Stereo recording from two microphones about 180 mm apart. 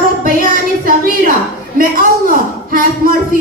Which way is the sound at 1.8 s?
50° right (ahead or behind).